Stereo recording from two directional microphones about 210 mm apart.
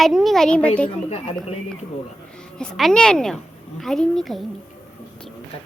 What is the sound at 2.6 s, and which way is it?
A woman's voice, centre (ahead or behind).